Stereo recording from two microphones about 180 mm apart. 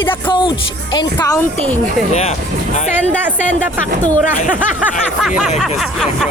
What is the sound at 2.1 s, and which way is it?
Speech, 40° left (ahead or behind).